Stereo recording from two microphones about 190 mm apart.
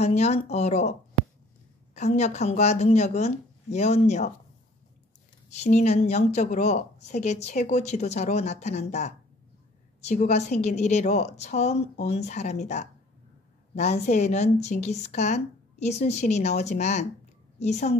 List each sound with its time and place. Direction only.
0.0 s a woman's voice: 35° left (ahead or behind)
2.0 s a woman's voice: 35° left (ahead or behind)
5.5 s a woman's voice: 40° left (ahead or behind)